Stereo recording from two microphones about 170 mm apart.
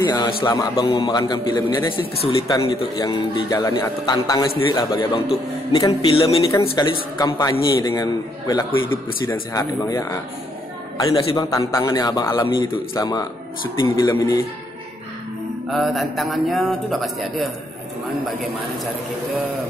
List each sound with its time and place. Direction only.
0.0 s a man's voice: 25° left (ahead or behind)
7.2 s a man's voice: 20° left (ahead or behind)
11.3 s a man's voice: 20° left (ahead or behind)
15.7 s a man's voice: centre (ahead or behind)